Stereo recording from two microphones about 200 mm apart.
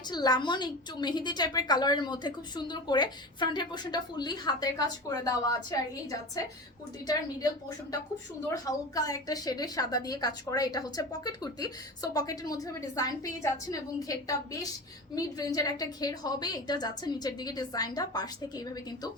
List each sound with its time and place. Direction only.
0.1 s a woman's voice: 20° left (ahead or behind)
8.4 s a woman's voice: 20° left (ahead or behind)